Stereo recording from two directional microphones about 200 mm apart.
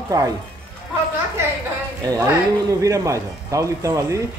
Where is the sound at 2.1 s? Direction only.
15° right (ahead or behind).